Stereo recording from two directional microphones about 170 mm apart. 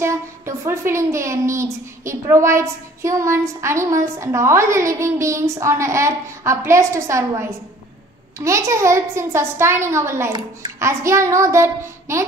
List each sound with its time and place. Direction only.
0.0 s a woman's voice: 15° right (ahead or behind)
8.4 s a woman's voice: 20° right (ahead or behind)